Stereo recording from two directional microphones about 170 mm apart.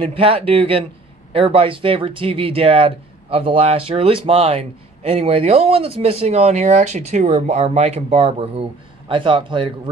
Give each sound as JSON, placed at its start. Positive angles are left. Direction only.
{"t": 0.0, "sound": "speech", "side_deg": -35}